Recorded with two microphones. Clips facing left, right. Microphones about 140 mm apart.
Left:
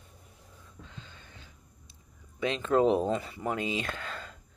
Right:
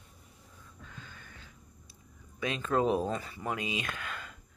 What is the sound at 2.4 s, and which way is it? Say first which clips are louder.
Speech: left 4 dB; 30° left (ahead or behind).